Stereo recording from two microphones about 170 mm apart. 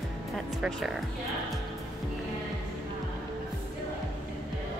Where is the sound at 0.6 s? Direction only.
Centre (ahead or behind).